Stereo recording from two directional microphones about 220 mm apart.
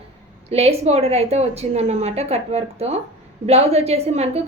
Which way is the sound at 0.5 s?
30° right (ahead or behind).